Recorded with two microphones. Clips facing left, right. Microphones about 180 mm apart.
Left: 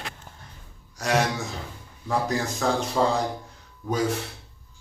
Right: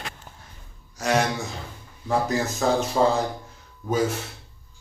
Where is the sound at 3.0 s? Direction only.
15° right (ahead or behind).